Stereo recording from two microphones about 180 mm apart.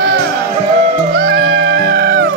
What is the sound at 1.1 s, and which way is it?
Music, 60° right (ahead or behind).